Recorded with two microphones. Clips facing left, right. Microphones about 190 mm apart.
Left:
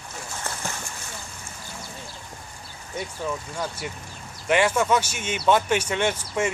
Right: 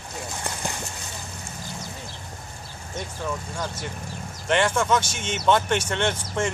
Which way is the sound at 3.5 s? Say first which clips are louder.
Even; 10° left (ahead or behind).